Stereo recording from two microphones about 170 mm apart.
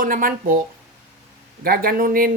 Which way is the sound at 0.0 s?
55° right (ahead or behind).